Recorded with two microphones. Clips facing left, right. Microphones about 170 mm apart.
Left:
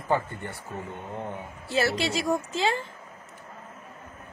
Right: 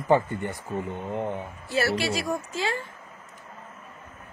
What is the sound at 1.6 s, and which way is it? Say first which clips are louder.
A woman's voice: even; 20° left (ahead or behind).